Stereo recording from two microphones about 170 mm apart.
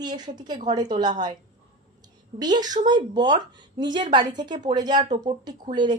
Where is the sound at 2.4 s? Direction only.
25° right (ahead or behind).